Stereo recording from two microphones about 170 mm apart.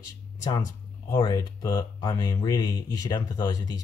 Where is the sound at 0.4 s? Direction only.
20° left (ahead or behind).